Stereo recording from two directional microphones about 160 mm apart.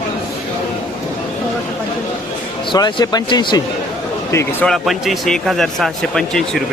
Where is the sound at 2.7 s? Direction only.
25° left (ahead or behind).